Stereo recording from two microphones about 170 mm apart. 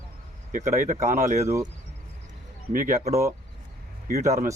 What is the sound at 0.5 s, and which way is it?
Speech, 50° right (ahead or behind).